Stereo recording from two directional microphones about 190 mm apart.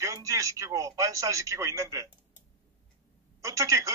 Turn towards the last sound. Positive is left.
turn(degrees=-15)  # may be behind; listen again after turning